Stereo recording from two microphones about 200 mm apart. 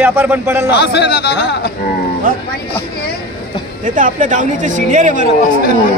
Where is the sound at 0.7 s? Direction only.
55° left (ahead or behind).